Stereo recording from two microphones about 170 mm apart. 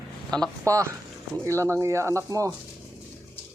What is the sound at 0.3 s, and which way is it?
Speech, 5° left (ahead or behind).